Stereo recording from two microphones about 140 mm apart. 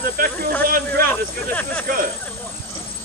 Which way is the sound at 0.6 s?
90° right.